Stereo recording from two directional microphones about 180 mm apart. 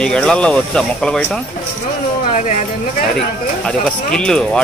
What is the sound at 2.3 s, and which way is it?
Speech, 45° left (ahead or behind).